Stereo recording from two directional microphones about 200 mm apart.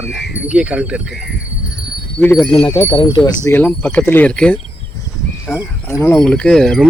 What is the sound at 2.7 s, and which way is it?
Speech, 25° left (ahead or behind).